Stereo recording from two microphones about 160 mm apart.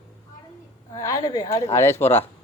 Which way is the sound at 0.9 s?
20° left (ahead or behind).